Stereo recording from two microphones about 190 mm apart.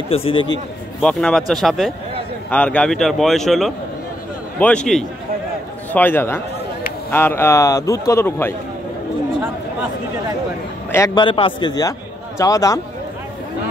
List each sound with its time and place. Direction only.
0.1 s a man's voice: 30° left (ahead or behind)
1.0 s speech: 5° left (ahead or behind)
11.1 s a man's voice: 25° left (ahead or behind)